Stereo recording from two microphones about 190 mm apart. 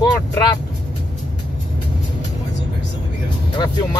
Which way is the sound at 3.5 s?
25° left (ahead or behind).